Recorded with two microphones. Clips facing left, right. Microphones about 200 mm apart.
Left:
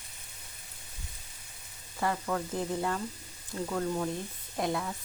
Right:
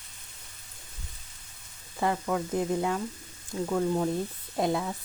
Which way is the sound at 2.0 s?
15° right (ahead or behind).